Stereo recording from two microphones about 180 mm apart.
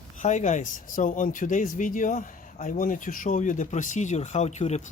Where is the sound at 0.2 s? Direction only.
40° left (ahead or behind).